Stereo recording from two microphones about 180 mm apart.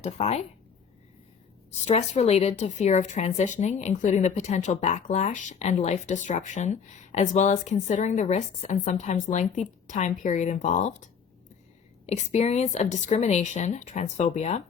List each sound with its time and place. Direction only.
0.0 s a woman's voice: 35° left (ahead or behind)
1.7 s a woman's voice: 35° left (ahead or behind)
12.0 s a woman's voice: 40° left (ahead or behind)